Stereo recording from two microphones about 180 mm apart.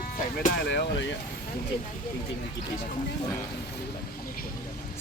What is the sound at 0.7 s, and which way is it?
Speech, 80° left.